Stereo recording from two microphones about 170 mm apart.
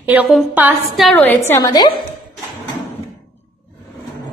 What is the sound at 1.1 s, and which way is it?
Speech, 10° left (ahead or behind).